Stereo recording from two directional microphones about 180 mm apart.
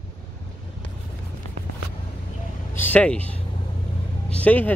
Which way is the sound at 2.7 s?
10° left (ahead or behind).